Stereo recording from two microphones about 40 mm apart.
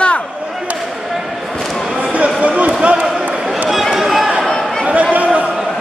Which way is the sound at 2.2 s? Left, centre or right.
Right.